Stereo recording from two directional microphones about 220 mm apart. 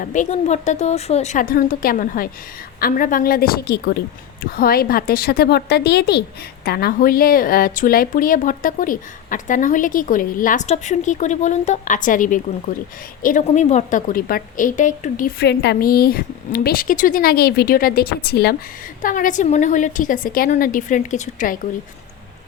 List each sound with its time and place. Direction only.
0.0 s a woman's voice: 35° left (ahead or behind)